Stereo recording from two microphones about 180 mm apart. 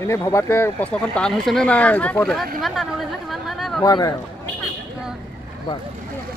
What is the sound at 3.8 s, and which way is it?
Speech, 20° left (ahead or behind).